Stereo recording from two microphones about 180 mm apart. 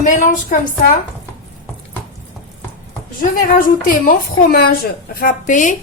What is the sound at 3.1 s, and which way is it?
A woman's voice, 50° left (ahead or behind).